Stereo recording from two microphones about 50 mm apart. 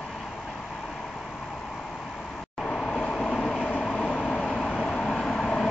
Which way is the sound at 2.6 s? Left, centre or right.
Centre.